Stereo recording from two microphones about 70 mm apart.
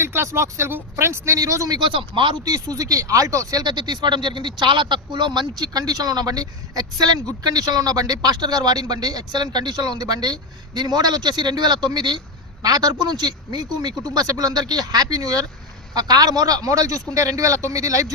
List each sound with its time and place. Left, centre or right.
0.0 s speech: right
1.4 s a man's voice: right
12.6 s a man's voice: right